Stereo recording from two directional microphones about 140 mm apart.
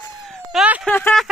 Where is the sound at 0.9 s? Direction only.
10° left (ahead or behind).